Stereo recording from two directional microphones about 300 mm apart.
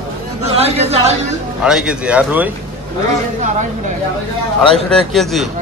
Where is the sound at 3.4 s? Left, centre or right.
Right.